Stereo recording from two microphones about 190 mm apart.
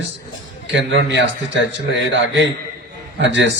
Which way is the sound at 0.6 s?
70° right (ahead or behind).